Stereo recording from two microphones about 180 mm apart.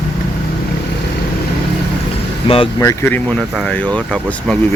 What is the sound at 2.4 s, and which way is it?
Speech, 30° left (ahead or behind).